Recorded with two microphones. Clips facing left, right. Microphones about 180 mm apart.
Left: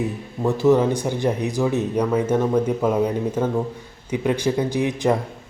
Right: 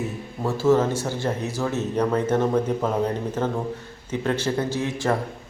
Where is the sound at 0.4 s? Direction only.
15° left (ahead or behind).